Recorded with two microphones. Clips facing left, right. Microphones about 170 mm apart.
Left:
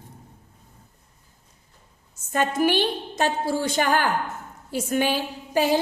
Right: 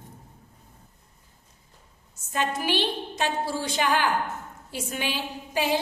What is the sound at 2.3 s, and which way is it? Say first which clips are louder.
A woman's voice: left 5 dB; 50° left (ahead or behind).